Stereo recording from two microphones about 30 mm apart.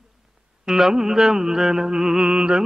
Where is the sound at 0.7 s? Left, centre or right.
Centre.